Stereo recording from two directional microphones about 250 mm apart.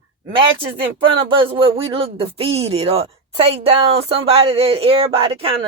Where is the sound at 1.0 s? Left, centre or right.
Right.